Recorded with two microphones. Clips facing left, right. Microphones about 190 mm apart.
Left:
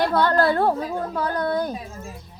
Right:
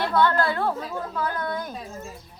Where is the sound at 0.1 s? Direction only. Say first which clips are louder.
Left 3 dB; 40° left (ahead or behind).